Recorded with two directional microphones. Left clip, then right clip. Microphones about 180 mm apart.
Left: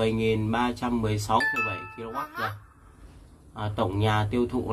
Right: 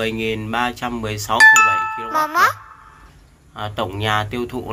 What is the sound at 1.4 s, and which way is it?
Speech, 60° right (ahead or behind).